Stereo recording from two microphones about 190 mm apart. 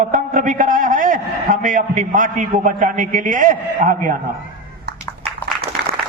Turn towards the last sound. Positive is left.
turn(degrees=-45)  # may be behind; listen again after turning